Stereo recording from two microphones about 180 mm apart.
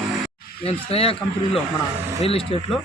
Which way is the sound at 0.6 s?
30° left (ahead or behind).